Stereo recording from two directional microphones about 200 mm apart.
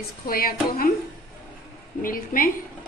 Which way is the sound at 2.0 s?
45° left (ahead or behind).